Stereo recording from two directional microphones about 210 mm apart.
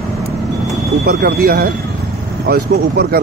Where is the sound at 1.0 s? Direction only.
45° right (ahead or behind).